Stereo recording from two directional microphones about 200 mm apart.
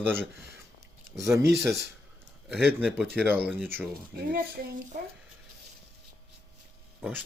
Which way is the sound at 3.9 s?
50° right (ahead or behind).